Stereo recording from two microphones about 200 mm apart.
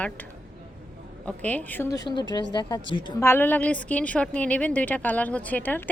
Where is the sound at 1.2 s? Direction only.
5° left (ahead or behind).